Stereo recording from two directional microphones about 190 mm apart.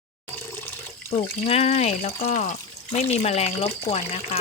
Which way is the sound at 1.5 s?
35° left (ahead or behind).